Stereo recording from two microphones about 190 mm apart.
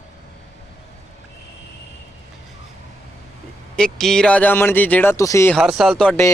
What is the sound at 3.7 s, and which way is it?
Speech, 5° left (ahead or behind).